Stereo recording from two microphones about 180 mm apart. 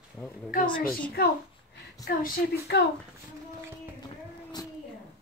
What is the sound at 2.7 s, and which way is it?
Speech, 70° left (ahead or behind).